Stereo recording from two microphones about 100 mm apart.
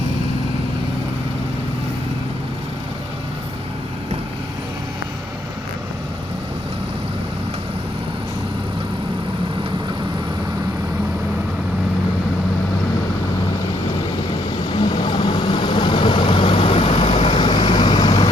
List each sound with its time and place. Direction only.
14.7 s vehicle: 50° left (ahead or behind)